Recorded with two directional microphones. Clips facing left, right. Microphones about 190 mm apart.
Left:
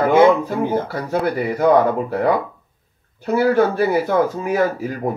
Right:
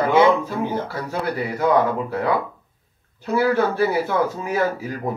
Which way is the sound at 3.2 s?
50° left (ahead or behind).